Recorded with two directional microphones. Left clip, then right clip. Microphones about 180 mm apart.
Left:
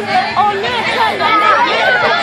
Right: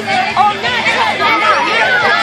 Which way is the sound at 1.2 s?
30° left (ahead or behind).